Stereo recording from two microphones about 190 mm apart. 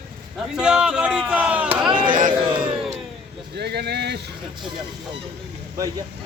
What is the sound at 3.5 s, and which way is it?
Speech, 60° right (ahead or behind).